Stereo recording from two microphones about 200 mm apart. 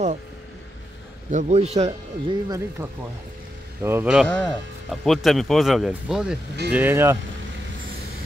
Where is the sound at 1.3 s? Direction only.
30° right (ahead or behind).